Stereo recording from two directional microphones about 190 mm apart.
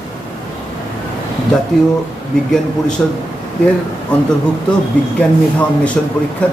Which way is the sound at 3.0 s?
10° left (ahead or behind).